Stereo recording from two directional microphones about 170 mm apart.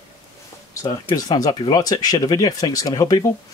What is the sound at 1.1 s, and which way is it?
Speech, 20° left (ahead or behind).